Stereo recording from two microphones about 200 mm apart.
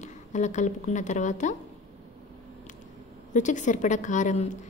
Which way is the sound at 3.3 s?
40° left (ahead or behind).